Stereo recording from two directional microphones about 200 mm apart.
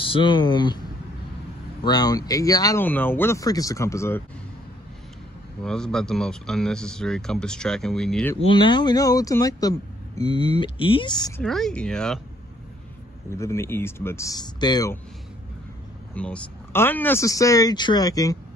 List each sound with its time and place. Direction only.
0.0 s speech: 25° left (ahead or behind)
1.9 s speech: 20° left (ahead or behind)
5.6 s speech: 5° left (ahead or behind)
8.4 s speech: 25° left (ahead or behind)
11.4 s speech: centre (ahead or behind)
13.3 s speech: 15° left (ahead or behind)
16.2 s speech: 5° left (ahead or behind)